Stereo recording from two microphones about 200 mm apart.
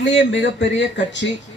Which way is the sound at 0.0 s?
60° left (ahead or behind).